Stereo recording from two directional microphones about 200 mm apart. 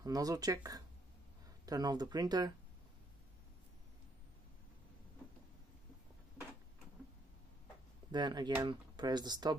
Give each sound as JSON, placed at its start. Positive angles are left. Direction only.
{"t": 0.0, "sound": "speech", "side_deg": -20}
{"t": 8.1, "sound": "speech", "side_deg": -20}